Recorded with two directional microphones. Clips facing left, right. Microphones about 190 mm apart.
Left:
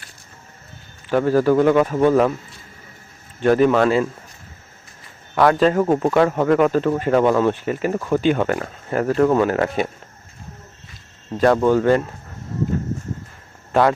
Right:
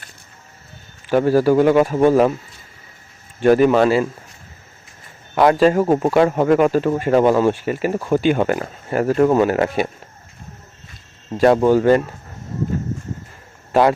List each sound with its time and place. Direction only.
1.1 s speech: 10° right (ahead or behind)
3.4 s speech: 10° right (ahead or behind)
5.3 s speech: 15° right (ahead or behind)
7.1 s speech: 30° right (ahead or behind)
7.3 s speech: 5° right (ahead or behind)
11.4 s speech: 15° right (ahead or behind)